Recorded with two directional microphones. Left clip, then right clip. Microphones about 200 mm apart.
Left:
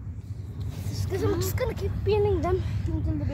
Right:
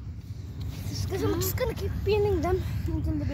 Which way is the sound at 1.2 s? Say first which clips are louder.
Left 1 dB; 15° right (ahead or behind).